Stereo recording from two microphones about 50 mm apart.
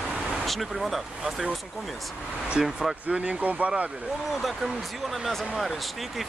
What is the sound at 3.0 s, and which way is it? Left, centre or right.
Speech, right.